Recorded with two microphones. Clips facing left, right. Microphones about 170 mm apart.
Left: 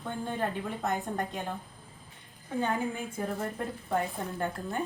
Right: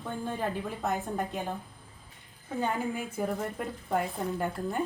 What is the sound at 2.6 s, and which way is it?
A woman's voice, 5° right (ahead or behind).